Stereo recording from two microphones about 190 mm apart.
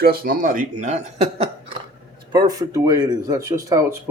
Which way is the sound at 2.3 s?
20° right (ahead or behind).